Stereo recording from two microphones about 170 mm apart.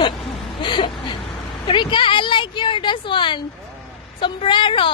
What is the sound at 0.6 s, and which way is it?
A woman's voice, 30° left (ahead or behind).